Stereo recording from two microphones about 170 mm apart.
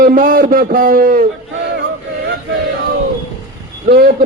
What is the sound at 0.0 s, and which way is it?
A man's voice, 55° right (ahead or behind).